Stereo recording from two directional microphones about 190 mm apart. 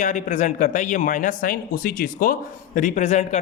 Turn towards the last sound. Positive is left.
turn(degrees=35)  # may be behind; listen again after turning